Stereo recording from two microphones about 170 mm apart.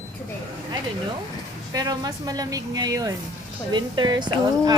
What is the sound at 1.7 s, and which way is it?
Speech, 20° right (ahead or behind).